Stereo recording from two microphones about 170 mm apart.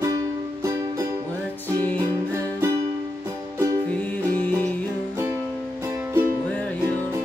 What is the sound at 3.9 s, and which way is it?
Music, 10° left (ahead or behind).